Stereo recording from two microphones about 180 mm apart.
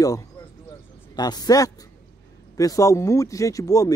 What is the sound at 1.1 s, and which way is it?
Speech, 20° left (ahead or behind).